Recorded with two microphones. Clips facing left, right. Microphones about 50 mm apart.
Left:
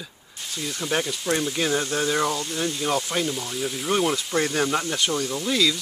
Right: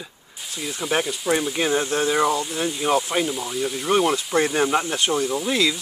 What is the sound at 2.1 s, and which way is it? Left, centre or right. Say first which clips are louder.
Speech: right 4 dB; centre.